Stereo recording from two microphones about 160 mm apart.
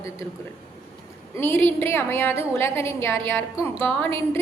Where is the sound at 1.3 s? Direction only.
15° left (ahead or behind).